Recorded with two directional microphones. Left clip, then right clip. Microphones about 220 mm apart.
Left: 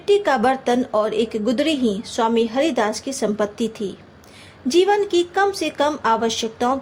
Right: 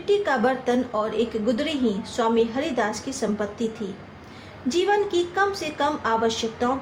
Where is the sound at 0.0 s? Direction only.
45° left (ahead or behind).